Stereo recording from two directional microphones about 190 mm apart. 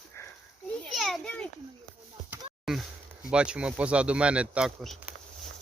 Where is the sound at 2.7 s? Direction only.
Centre (ahead or behind).